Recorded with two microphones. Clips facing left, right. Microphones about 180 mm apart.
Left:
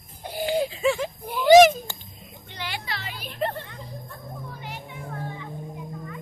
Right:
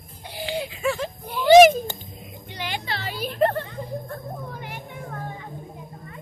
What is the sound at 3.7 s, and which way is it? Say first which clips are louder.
Music: right 8 dB; 55° right (ahead or behind).